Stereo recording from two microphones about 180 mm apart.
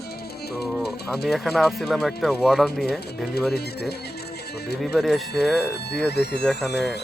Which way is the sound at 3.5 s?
65° left (ahead or behind).